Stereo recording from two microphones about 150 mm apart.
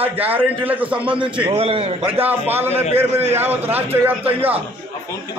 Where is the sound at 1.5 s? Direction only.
40° right (ahead or behind).